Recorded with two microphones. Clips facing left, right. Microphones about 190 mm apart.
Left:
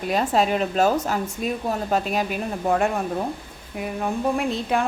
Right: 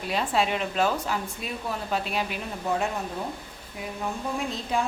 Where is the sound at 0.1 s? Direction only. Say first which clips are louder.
Left 5 dB; 45° left (ahead or behind).